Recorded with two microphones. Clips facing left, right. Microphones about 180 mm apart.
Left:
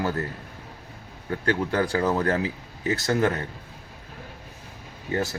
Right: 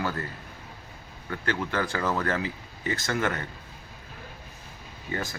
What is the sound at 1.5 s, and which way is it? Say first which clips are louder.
Speech: left 5 dB; 35° left (ahead or behind).